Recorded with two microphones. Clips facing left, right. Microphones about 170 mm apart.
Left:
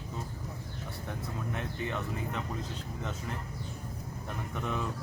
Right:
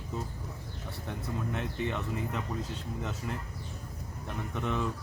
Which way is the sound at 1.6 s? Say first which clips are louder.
Right 2 dB; centre (ahead or behind).